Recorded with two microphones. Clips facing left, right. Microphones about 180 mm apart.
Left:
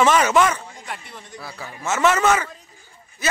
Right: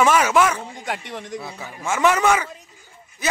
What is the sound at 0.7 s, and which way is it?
Speech, 90° right.